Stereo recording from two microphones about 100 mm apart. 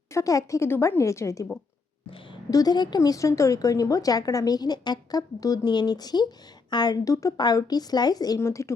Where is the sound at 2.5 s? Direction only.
40° left (ahead or behind).